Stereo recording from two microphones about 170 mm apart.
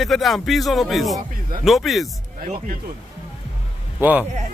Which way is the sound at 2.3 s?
55° right (ahead or behind).